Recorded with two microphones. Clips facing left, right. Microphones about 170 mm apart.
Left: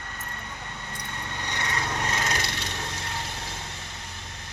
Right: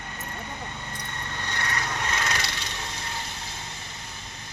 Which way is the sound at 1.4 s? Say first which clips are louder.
Even; 20° left (ahead or behind).